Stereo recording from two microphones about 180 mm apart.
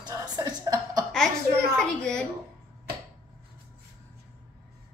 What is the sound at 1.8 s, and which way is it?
Speech, 5° left (ahead or behind).